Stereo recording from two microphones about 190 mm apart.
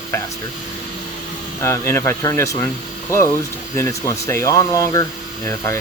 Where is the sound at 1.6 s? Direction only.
15° left (ahead or behind).